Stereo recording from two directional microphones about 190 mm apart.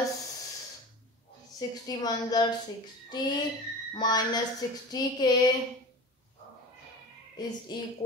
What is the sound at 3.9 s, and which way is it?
Speech, 20° left (ahead or behind).